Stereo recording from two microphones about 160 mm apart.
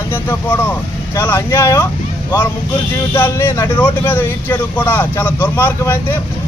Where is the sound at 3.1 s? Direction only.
15° left (ahead or behind).